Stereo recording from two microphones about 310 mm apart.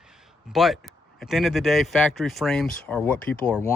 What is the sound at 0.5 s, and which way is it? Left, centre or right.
Speech, centre.